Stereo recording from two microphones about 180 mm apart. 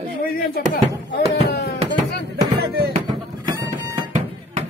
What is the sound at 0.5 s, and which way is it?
Music, 65° left (ahead or behind).